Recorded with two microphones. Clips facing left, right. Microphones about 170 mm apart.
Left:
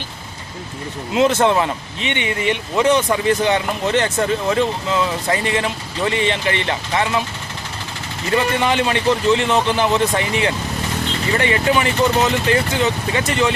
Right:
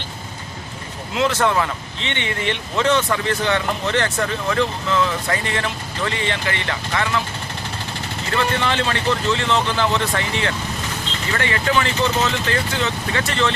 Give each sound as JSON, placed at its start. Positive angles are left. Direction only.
{"t": 1.1, "sound": "speech", "side_deg": 20}
{"t": 8.6, "sound": "speech", "side_deg": 15}